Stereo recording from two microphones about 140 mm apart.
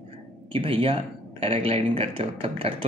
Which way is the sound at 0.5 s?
40° right (ahead or behind).